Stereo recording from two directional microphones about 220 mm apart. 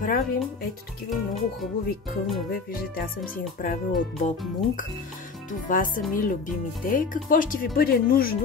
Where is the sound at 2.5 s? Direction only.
40° left (ahead or behind).